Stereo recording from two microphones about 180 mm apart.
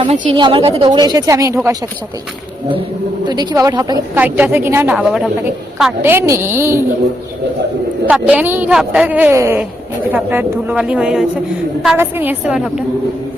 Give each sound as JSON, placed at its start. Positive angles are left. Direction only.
{"t": 0.0, "sound": "speech", "side_deg": -25}
{"t": 3.2, "sound": "speech", "side_deg": -20}
{"t": 4.1, "sound": "a woman's voice", "side_deg": -10}
{"t": 8.0, "sound": "a woman's voice", "side_deg": -5}